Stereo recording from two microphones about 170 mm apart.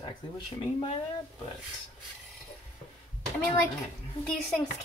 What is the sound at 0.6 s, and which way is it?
Speech, 30° left (ahead or behind).